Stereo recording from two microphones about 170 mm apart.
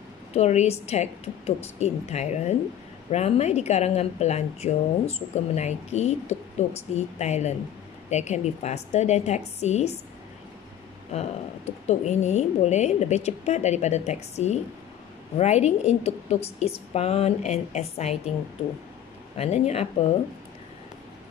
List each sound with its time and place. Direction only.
0.3 s a woman's voice: 40° left (ahead or behind)
11.9 s a woman's voice: 40° left (ahead or behind)
19.3 s a woman's voice: 40° left (ahead or behind)